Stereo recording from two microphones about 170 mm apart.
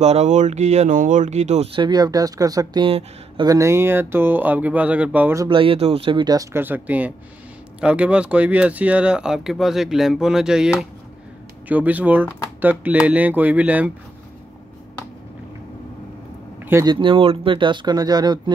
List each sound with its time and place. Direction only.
0.0 s speech: 40° right (ahead or behind)
3.4 s speech: 15° right (ahead or behind)
5.5 s speech: 30° right (ahead or behind); by 13.9 s 10° right (ahead or behind)
16.6 s speech: 20° right (ahead or behind)